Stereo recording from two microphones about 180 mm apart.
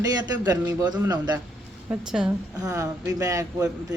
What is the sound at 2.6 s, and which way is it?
A man's voice, 20° right (ahead or behind).